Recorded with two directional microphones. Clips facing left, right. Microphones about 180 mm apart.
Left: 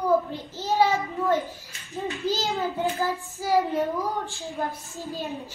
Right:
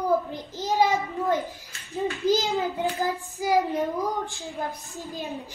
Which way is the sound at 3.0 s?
15° right (ahead or behind).